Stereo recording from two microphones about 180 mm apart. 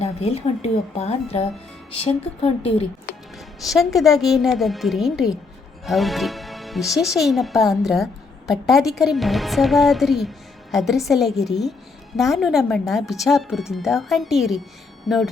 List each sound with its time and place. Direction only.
0.0 s speech: 35° left (ahead or behind)
3.3 s speech: centre (ahead or behind)